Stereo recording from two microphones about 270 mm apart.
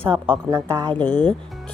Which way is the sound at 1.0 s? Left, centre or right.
Centre.